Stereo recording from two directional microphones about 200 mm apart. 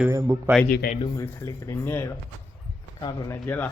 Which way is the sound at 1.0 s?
15° left (ahead or behind).